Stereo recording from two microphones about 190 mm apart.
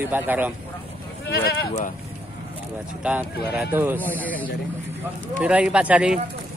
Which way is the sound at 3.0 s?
5° right (ahead or behind).